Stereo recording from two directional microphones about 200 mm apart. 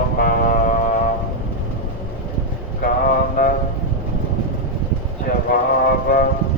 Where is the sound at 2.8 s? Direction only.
45° left (ahead or behind).